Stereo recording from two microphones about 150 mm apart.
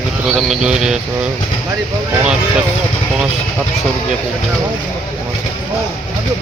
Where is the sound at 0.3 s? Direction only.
Centre (ahead or behind).